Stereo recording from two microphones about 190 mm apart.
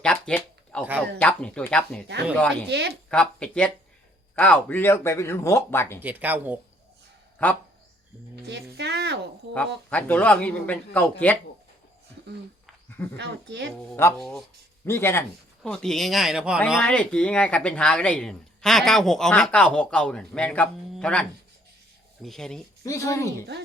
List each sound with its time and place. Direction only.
0.0 s speech: 5° left (ahead or behind)
2.6 s speech: 60° right (ahead or behind)
3.1 s speech: 5° left (ahead or behind)
6.0 s speech: 10° right (ahead or behind)
7.4 s speech: 10° left (ahead or behind)
8.4 s speech: 65° right (ahead or behind)
9.9 s speech: 10° left (ahead or behind)
13.1 s speech: 60° right (ahead or behind)
13.7 s speech: 15° left (ahead or behind)
14.2 s speech: centre (ahead or behind)
16.9 s speech: 5° left (ahead or behind)
22.8 s speech: 20° left (ahead or behind)